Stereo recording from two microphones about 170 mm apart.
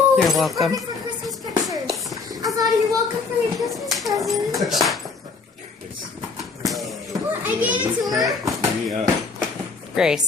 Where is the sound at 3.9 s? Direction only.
Centre (ahead or behind).